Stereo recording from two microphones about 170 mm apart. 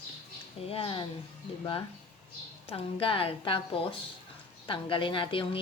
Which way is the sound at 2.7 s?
30° left (ahead or behind).